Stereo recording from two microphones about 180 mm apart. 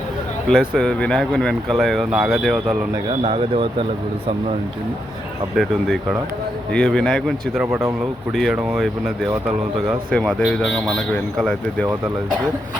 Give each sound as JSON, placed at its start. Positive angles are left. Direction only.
{"t": 0.4, "sound": "speech", "side_deg": 5}
{"t": 3.1, "sound": "speech", "side_deg": -30}
{"t": 5.5, "sound": "speech", "side_deg": 0}
{"t": 7.7, "sound": "speech", "side_deg": -15}
{"t": 8.3, "sound": "speech", "side_deg": 0}